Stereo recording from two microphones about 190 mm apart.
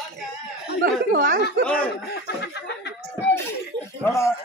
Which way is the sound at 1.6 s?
5° left (ahead or behind).